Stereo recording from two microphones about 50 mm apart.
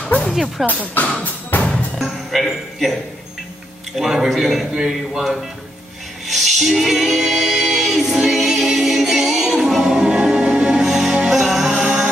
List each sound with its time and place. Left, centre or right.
0.0 s music: left
0.3 s speech: centre
1.5 s music: left
2.0 s a man's voice: centre
6.2 s music: centre